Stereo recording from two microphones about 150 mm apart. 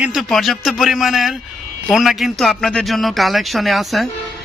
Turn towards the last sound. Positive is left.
turn(degrees=0)  # may be behind; listen again after turning